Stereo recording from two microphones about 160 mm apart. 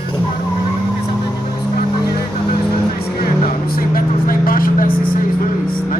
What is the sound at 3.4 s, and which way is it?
Vehicle, 65° left (ahead or behind).